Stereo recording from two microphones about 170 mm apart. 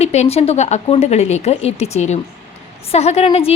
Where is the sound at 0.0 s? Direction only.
40° left (ahead or behind).